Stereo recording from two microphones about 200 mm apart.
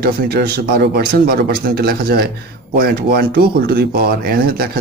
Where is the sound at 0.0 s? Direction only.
50° right (ahead or behind).